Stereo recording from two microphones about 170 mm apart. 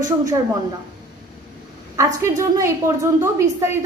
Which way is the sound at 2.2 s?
15° right (ahead or behind).